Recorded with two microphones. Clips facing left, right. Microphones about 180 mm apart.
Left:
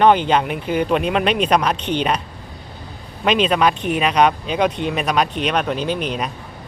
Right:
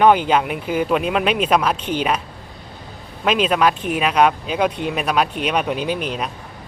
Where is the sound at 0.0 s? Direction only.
5° right (ahead or behind).